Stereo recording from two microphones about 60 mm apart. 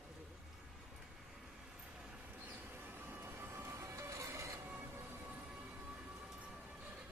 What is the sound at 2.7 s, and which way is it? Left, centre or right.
Vehicle, right.